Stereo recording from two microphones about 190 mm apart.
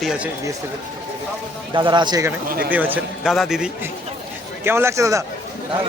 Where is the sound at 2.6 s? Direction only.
10° right (ahead or behind).